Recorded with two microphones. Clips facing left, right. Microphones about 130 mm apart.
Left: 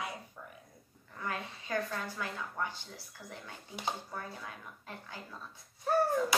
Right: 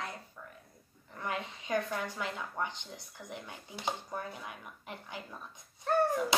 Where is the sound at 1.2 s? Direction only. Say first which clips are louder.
Right 2 dB; 20° right (ahead or behind).